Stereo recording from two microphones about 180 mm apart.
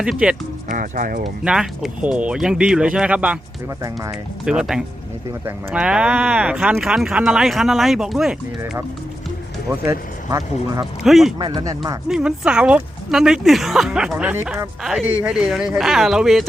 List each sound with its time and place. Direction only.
0.0 s speech: 5° right (ahead or behind)
0.7 s speech: 50° right (ahead or behind)
1.2 s speech: 5° right (ahead or behind)
4.4 s speech: 5° right (ahead or behind)
9.6 s speech: 15° right (ahead or behind)
11.0 s speech: centre (ahead or behind)
11.3 s speech: 25° right (ahead or behind)
12.0 s speech: 5° right (ahead or behind)